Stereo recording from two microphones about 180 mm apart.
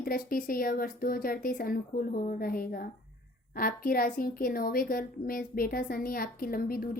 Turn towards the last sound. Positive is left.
turn(degrees=55)  # may be behind; listen again after turning